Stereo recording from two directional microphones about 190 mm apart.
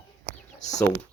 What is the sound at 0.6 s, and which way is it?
Speech, 40° left (ahead or behind).